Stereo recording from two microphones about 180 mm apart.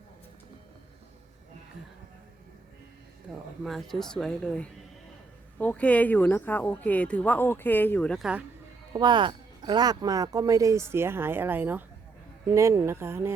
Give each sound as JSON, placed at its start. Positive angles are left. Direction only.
{"t": 3.3, "sound": "speech", "side_deg": 0}
{"t": 8.9, "sound": "speech", "side_deg": -25}